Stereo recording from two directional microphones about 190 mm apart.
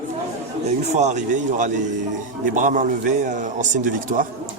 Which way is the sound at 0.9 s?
40° right (ahead or behind).